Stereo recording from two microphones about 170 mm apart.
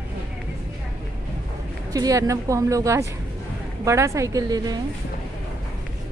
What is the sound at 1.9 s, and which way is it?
A woman's voice, 20° right (ahead or behind).